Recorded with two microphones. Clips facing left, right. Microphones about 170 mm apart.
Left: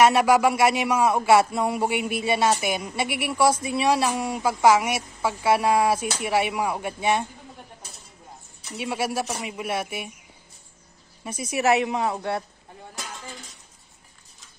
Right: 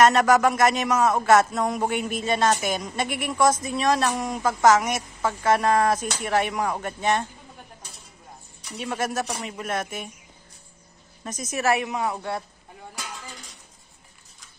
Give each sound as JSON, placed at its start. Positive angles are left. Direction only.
{"t": 0.0, "sound": "speech", "side_deg": 10}
{"t": 8.7, "sound": "speech", "side_deg": 10}
{"t": 11.2, "sound": "speech", "side_deg": 10}